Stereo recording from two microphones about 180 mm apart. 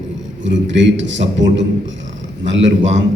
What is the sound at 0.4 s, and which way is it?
A man's voice, 90° right.